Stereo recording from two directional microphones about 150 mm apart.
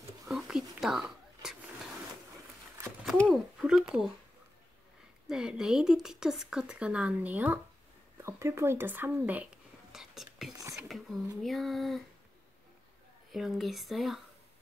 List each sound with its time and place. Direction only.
0.3 s a sound: centre (ahead or behind)
3.3 s speech: centre (ahead or behind)
5.3 s speech: 5° right (ahead or behind)
13.3 s speech: centre (ahead or behind)